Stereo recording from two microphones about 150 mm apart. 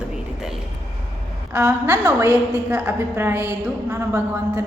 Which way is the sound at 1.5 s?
20° right (ahead or behind).